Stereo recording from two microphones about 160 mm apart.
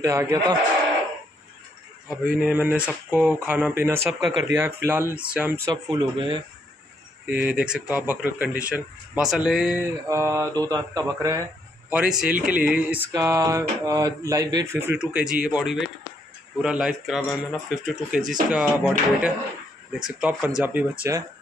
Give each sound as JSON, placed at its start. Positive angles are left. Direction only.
{"t": 0.0, "sound": "speech", "side_deg": -20}
{"t": 2.0, "sound": "speech", "side_deg": -5}
{"t": 4.1, "sound": "speech", "side_deg": 0}
{"t": 4.5, "sound": "speech", "side_deg": -15}
{"t": 5.7, "sound": "speech", "side_deg": -30}
{"t": 7.4, "sound": "speech", "side_deg": -5}
{"t": 10.0, "sound": "speech", "side_deg": -20}
{"t": 11.9, "sound": "speech", "side_deg": -5}
{"t": 13.1, "sound": "speech", "side_deg": -20}